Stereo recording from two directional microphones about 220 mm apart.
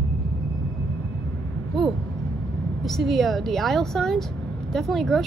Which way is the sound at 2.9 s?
Centre (ahead or behind).